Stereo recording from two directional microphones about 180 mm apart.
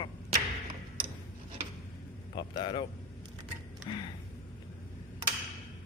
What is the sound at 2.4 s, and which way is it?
Speech, 25° left (ahead or behind).